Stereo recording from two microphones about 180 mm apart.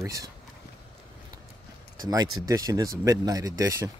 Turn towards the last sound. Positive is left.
turn(degrees=-15)  # may be behind; listen again after turning